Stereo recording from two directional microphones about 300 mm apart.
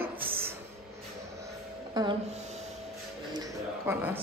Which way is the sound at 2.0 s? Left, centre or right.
Centre.